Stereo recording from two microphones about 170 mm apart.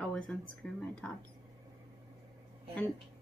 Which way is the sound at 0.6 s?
Centre (ahead or behind).